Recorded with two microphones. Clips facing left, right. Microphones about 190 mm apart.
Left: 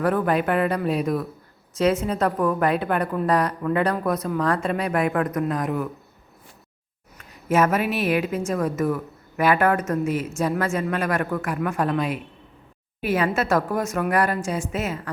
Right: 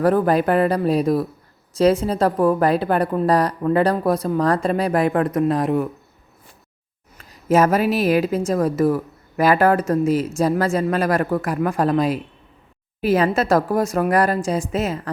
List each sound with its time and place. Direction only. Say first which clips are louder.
0.0 s a woman's voice: right 5 dB; 35° right (ahead or behind)
7.2 s a woman's voice: right 4 dB; 35° right (ahead or behind)